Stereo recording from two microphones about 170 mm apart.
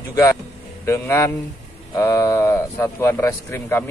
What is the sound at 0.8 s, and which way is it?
Speech, 15° left (ahead or behind).